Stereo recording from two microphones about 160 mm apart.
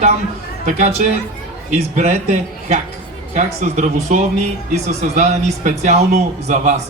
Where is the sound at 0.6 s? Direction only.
45° right (ahead or behind).